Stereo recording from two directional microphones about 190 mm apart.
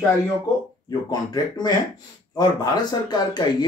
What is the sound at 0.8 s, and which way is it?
Speech, 20° left (ahead or behind).